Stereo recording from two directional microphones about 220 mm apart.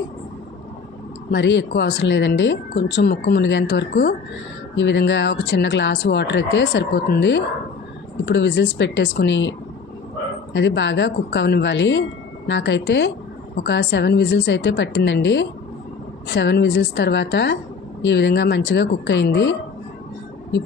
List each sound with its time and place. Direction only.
1.3 s speech: 55° left (ahead or behind)